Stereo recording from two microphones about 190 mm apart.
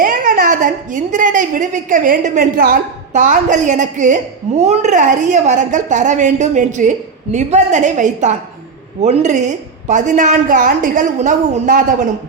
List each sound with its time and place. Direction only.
0.0 s a woman's voice: 45° right (ahead or behind)